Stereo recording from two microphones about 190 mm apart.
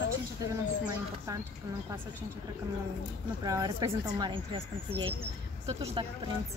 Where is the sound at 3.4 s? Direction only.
20° right (ahead or behind).